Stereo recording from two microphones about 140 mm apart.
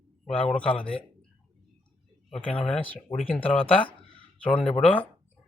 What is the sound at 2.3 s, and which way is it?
Speech, 10° left (ahead or behind).